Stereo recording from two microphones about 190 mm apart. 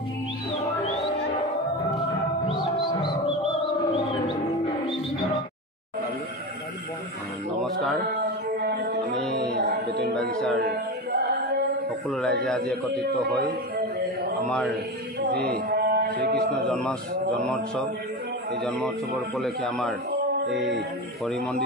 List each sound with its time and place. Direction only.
0.8 s music: 35° left (ahead or behind)
8.5 s music: 55° right (ahead or behind)
10.3 s music: 5° left (ahead or behind)
10.6 s chant: 55° right (ahead or behind)
12.1 s a man's voice: centre (ahead or behind)
14.5 s a man's voice: 5° left (ahead or behind)
15.5 s a sound: 50° right (ahead or behind)
16.3 s a man's voice: 5° left (ahead or behind)
18.6 s a man's voice: centre (ahead or behind)
20.1 s music: 60° right (ahead or behind)
21.3 s a man's voice: centre (ahead or behind)